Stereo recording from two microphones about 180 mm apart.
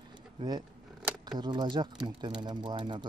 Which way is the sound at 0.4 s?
25° right (ahead or behind).